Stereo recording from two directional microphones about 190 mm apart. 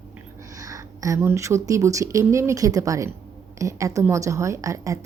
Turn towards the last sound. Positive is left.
turn(degrees=-15)  # may be behind; listen again after turning